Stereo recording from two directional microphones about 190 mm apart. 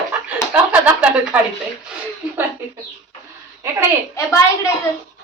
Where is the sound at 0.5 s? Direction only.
10° right (ahead or behind).